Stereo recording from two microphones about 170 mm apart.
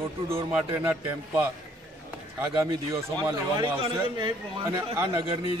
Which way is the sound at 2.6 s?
20° right (ahead or behind).